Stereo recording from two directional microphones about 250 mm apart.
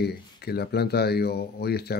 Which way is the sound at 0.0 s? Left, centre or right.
Left.